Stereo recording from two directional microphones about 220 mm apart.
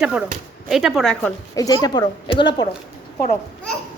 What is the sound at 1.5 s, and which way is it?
A woman's voice, 15° left (ahead or behind).